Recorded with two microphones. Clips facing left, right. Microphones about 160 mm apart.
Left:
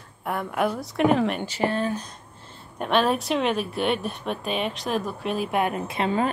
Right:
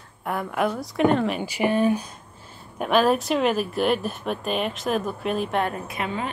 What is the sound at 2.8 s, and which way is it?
Speech, 5° right (ahead or behind).